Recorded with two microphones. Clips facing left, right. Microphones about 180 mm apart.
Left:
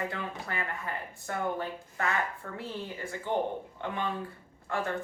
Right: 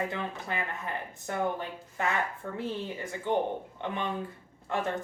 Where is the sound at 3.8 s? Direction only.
20° right (ahead or behind).